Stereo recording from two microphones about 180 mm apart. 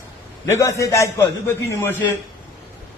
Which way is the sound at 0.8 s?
15° left (ahead or behind).